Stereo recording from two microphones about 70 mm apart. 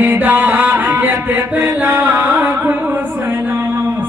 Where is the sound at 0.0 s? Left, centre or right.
Right.